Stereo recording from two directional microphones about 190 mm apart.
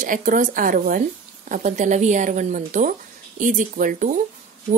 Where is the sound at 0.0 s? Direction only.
45° right (ahead or behind).